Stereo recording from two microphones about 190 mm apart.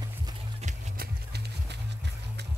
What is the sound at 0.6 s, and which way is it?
Music, 45° right (ahead or behind).